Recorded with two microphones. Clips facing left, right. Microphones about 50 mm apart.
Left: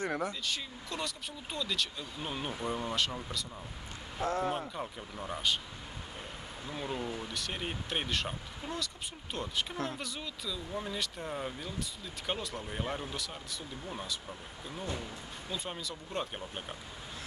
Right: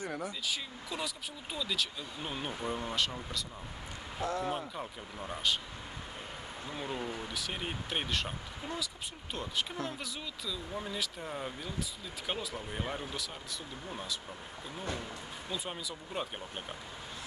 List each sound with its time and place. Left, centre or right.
0.0 s speech: left
0.4 s speech: centre
4.2 s speech: left
4.5 s speech: centre
6.7 s speech: centre
15.5 s speech: centre